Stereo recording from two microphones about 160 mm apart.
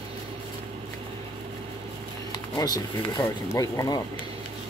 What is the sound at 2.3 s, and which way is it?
Speech, 25° left (ahead or behind).